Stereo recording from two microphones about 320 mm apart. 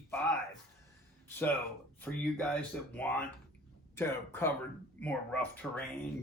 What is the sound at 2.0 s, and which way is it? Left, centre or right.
Speech, centre.